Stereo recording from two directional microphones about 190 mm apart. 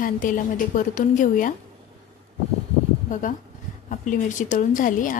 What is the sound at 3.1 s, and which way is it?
A woman's voice, 40° left (ahead or behind).